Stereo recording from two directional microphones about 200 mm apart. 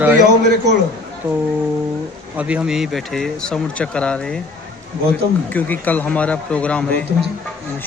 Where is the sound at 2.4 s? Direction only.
5° right (ahead or behind).